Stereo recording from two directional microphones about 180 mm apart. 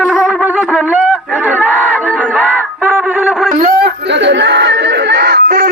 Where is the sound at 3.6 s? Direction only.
60° right (ahead or behind).